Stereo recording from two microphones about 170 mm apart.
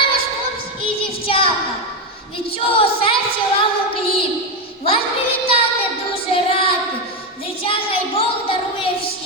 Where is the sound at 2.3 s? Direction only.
35° left (ahead or behind).